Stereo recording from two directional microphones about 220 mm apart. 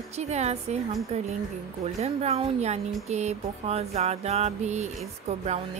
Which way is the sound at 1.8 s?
30° right (ahead or behind).